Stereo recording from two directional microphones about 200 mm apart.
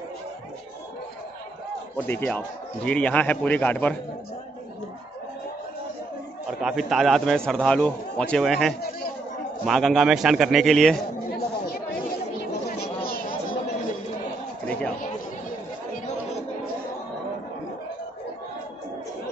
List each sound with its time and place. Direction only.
2.0 s a man's voice: 10° left (ahead or behind)
6.6 s a man's voice: centre (ahead or behind)
11.3 s chatter: 50° left (ahead or behind)
12.8 s a sound: 45° left (ahead or behind)